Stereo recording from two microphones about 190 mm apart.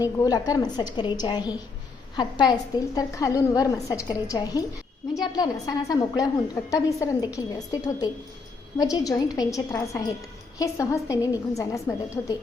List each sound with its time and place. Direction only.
0.0 s a woman's voice: 20° left (ahead or behind)